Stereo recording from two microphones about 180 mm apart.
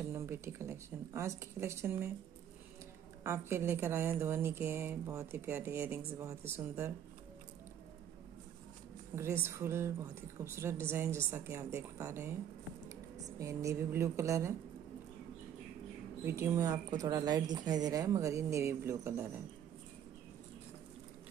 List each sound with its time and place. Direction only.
0.1 s a woman's voice: 15° right (ahead or behind)
3.3 s a woman's voice: 15° right (ahead or behind)
9.1 s a woman's voice: 15° right (ahead or behind)
13.4 s a woman's voice: 15° right (ahead or behind)
16.3 s speech: 15° right (ahead or behind)